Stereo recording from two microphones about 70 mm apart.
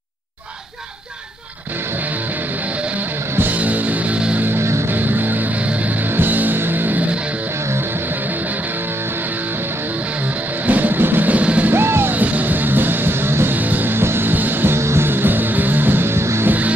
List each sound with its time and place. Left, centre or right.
3.3 s music: right
4.6 s music: right
4.9 s music: right
10.7 s music: right
11.7 s music: right